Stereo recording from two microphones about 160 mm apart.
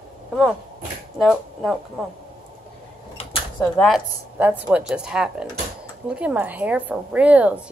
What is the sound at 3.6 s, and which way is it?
Speech, 5° left (ahead or behind).